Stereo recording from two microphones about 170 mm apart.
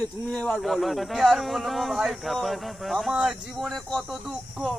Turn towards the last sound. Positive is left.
turn(degrees=0)  # may be behind; listen again after turning